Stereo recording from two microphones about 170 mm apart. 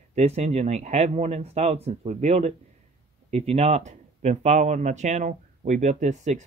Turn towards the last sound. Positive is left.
turn(degrees=-45)  # may be behind; listen again after turning